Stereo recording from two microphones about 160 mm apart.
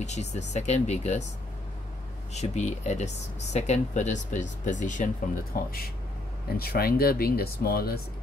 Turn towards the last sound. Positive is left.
turn(degrees=70)  # may be behind; listen again after turning